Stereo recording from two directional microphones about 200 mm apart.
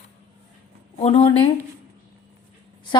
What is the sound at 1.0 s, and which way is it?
Speech, 30° left (ahead or behind).